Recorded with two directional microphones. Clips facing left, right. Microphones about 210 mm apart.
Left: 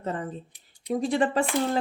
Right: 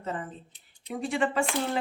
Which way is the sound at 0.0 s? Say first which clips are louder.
Left 4 dB; 40° left (ahead or behind).